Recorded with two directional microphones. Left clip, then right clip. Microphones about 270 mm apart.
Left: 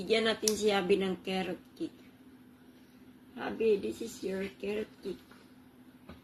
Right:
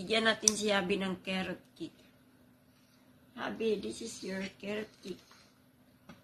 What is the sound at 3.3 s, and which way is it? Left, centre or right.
Speech, centre.